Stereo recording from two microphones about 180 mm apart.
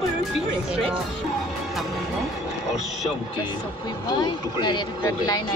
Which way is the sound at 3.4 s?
25° left (ahead or behind).